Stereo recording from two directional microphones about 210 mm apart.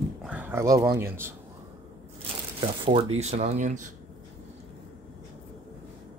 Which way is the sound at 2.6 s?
25° right (ahead or behind).